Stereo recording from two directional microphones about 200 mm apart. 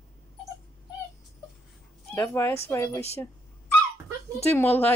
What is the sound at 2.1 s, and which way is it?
Speech, 10° left (ahead or behind).